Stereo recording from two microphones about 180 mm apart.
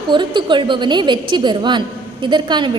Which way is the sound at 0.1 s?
25° right (ahead or behind).